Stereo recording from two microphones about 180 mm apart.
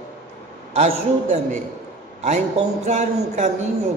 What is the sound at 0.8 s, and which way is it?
A man's voice, 40° right (ahead or behind).